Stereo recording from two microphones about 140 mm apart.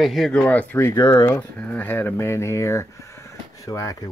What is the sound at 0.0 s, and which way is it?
Speech, centre (ahead or behind).